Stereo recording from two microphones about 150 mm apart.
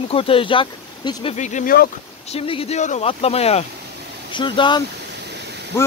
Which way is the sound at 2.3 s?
40° left (ahead or behind).